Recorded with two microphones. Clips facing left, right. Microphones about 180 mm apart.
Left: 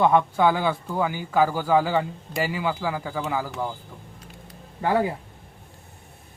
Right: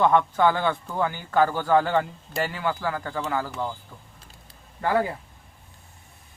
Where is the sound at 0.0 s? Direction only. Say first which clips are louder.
Left 1 dB; 10° left (ahead or behind).